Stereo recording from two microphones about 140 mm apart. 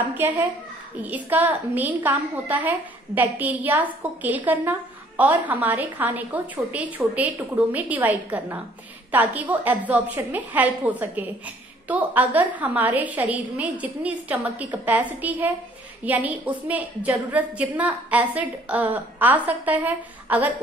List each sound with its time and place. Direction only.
0.2 s a woman's voice: 15° right (ahead or behind)